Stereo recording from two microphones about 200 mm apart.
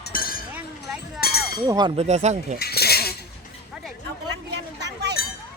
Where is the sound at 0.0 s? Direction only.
45° left (ahead or behind).